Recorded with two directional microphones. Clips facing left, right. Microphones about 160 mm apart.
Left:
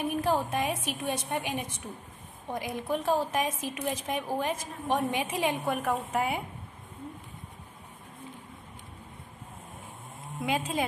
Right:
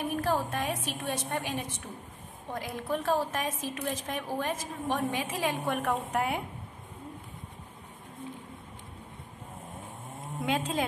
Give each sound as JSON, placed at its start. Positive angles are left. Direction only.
{"t": 0.1, "sound": "speech", "side_deg": 15}
{"t": 5.7, "sound": "a woman's voice", "side_deg": 5}
{"t": 10.4, "sound": "a woman's voice", "side_deg": 5}